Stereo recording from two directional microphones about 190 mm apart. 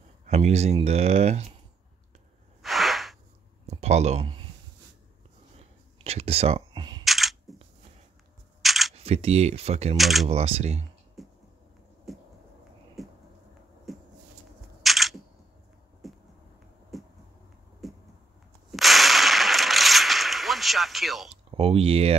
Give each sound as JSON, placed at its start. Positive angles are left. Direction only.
{"t": 0.3, "sound": "speech", "side_deg": -35}
{"t": 2.6, "sound": "a sound", "side_deg": 0}
{"t": 3.6, "sound": "speech", "side_deg": -35}
{"t": 5.6, "sound": "camera", "side_deg": -35}
{"t": 7.1, "sound": "single-lens reflex camera", "side_deg": 0}
{"t": 8.6, "sound": "single-lens reflex camera", "side_deg": 0}
{"t": 8.9, "sound": "speech", "side_deg": -35}
{"t": 9.9, "sound": "speech", "side_deg": 0}
{"t": 10.2, "sound": "speech", "side_deg": -35}
{"t": 11.2, "sound": "a sound", "side_deg": 0}
{"t": 14.8, "sound": "single-lens reflex camera", "side_deg": 0}
{"t": 16.0, "sound": "a sound", "side_deg": 0}
{"t": 18.7, "sound": "whip", "side_deg": 0}
{"t": 21.5, "sound": "a sound", "side_deg": -30}